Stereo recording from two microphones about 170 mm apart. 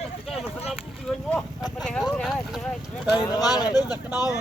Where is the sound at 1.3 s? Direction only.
5° left (ahead or behind).